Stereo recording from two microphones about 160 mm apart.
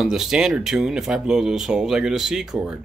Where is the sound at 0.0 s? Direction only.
Centre (ahead or behind).